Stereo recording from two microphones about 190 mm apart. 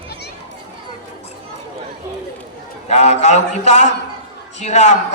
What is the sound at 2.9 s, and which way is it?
A man's voice, 35° left (ahead or behind).